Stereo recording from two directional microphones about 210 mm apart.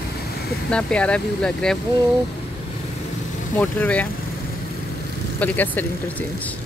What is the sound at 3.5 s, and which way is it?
Speech, 10° left (ahead or behind).